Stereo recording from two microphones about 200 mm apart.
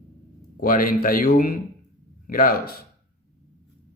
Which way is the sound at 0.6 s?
45° left (ahead or behind).